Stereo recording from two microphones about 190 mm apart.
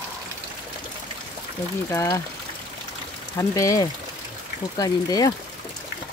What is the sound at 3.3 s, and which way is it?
Speech, 15° left (ahead or behind).